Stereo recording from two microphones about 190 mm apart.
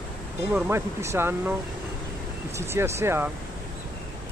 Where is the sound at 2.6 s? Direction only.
15° right (ahead or behind).